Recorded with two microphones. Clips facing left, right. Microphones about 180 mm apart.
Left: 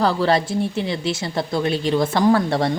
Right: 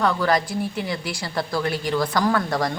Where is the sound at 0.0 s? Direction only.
30° left (ahead or behind).